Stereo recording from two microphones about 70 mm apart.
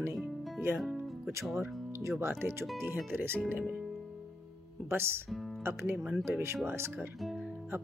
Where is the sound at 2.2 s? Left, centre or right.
Right.